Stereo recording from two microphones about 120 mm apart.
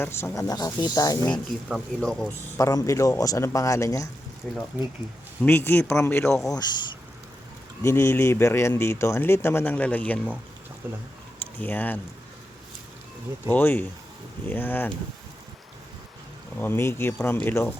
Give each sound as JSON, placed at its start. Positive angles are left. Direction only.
{"t": 0.0, "sound": "speech", "side_deg": 25}
{"t": 1.5, "sound": "speech", "side_deg": 0}
{"t": 2.6, "sound": "speech", "side_deg": 30}
{"t": 4.4, "sound": "speech", "side_deg": 5}
{"t": 5.4, "sound": "speech", "side_deg": 20}
{"t": 6.2, "sound": "speech", "side_deg": 5}
{"t": 7.8, "sound": "speech", "side_deg": 20}
{"t": 11.6, "sound": "speech", "side_deg": 15}
{"t": 13.5, "sound": "speech", "side_deg": 15}
{"t": 16.6, "sound": "speech", "side_deg": 20}